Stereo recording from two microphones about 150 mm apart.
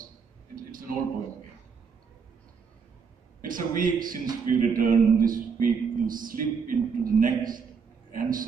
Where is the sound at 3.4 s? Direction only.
65° right (ahead or behind).